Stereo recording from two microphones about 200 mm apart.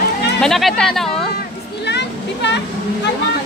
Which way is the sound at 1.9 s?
60° left (ahead or behind).